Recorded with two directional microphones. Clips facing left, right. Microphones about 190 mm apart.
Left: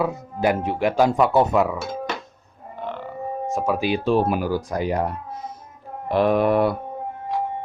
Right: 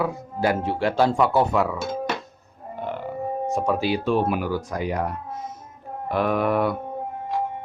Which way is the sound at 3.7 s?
15° left (ahead or behind).